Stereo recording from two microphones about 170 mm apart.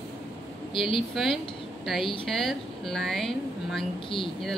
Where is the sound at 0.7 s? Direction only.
30° left (ahead or behind).